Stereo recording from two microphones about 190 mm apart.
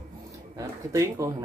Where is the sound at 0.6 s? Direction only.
15° right (ahead or behind).